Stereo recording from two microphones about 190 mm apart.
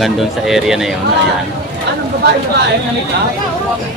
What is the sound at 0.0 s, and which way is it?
Speech, centre (ahead or behind).